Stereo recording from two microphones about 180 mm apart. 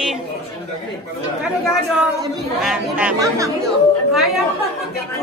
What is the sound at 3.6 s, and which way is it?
Speech, centre (ahead or behind).